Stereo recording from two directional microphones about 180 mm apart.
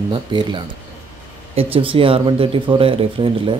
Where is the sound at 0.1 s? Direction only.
25° right (ahead or behind).